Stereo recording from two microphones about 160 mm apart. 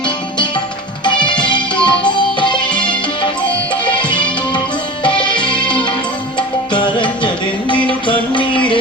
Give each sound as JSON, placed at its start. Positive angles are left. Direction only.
{"t": 1.0, "sound": "music", "side_deg": 30}
{"t": 3.8, "sound": "music", "side_deg": 30}
{"t": 6.7, "sound": "music", "side_deg": 30}